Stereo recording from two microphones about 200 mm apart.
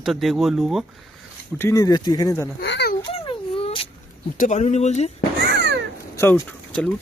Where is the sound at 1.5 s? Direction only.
15° left (ahead or behind).